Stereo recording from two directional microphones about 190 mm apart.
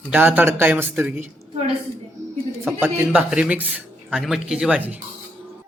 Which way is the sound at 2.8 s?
10° right (ahead or behind).